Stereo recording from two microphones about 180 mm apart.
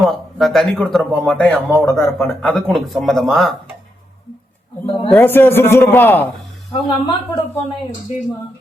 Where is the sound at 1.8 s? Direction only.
15° left (ahead or behind).